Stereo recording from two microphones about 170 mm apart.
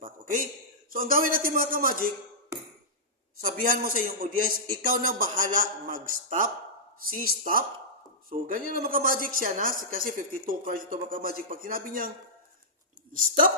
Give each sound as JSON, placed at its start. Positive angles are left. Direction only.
{"t": 0.0, "sound": "a sound", "side_deg": -55}
{"t": 0.9, "sound": "a woman's voice", "side_deg": -55}
{"t": 3.4, "sound": "a woman's voice", "side_deg": -55}
{"t": 13.1, "sound": "a woman's voice", "side_deg": -55}